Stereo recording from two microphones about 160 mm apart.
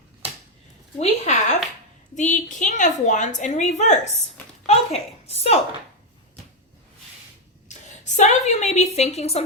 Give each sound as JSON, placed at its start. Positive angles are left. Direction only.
{"t": 0.9, "sound": "a woman's voice", "side_deg": 45}
{"t": 4.6, "sound": "a sound", "side_deg": 40}
{"t": 7.7, "sound": "a woman's voice", "side_deg": 50}